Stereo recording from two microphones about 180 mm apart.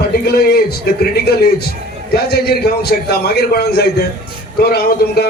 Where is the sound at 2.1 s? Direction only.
65° left (ahead or behind).